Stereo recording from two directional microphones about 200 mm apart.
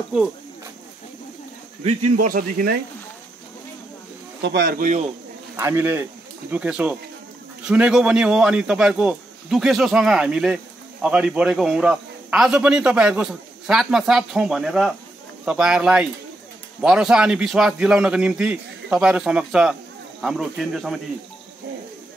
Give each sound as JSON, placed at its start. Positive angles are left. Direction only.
{"t": 1.9, "sound": "a man's voice", "side_deg": -45}
{"t": 4.4, "sound": "a man's voice", "side_deg": -55}
{"t": 5.6, "sound": "a man's voice", "side_deg": -15}